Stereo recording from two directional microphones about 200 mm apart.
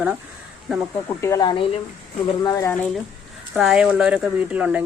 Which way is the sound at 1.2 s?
20° left (ahead or behind).